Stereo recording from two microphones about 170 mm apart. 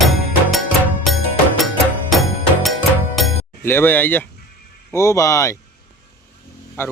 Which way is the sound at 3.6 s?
10° left (ahead or behind).